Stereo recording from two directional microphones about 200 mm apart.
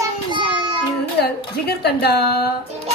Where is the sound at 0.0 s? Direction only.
25° right (ahead or behind).